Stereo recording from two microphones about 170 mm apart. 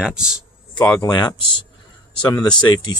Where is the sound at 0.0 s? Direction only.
5° right (ahead or behind).